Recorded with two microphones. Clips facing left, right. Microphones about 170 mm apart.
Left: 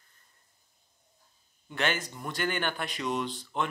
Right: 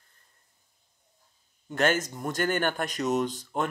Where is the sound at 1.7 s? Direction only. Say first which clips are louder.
Right 6 dB; 45° right (ahead or behind).